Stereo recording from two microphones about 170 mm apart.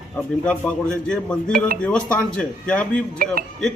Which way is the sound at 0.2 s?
10° left (ahead or behind).